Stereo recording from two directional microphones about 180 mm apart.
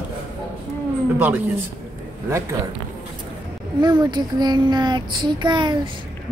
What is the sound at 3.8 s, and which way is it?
Child singing, 25° right (ahead or behind).